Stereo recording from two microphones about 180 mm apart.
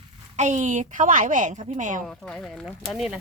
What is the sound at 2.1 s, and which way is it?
A woman's voice, 5° left (ahead or behind).